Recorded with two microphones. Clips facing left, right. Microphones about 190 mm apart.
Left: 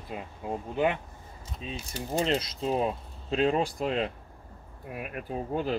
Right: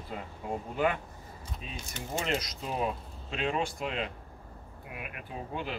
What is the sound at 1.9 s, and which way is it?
Speech, 35° left (ahead or behind).